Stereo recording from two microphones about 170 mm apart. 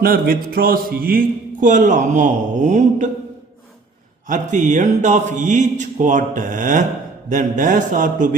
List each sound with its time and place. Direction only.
0.0 s mantra: 60° right (ahead or behind)
4.3 s mantra: 45° right (ahead or behind)